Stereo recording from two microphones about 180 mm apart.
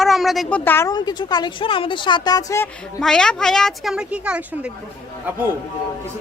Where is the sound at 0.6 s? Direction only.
10° left (ahead or behind).